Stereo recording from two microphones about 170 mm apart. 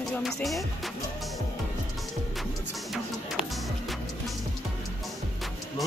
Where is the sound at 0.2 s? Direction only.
Centre (ahead or behind).